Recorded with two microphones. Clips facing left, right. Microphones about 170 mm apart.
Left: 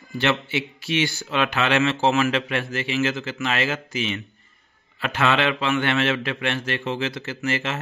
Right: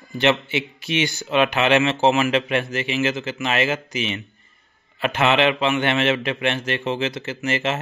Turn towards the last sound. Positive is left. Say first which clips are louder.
# right 3 dB
turn(degrees=-20)  # may be behind; listen again after turning